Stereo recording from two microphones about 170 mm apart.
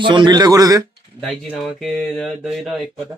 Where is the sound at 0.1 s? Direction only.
25° right (ahead or behind).